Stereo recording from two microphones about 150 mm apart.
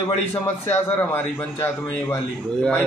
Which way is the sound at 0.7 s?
15° left (ahead or behind).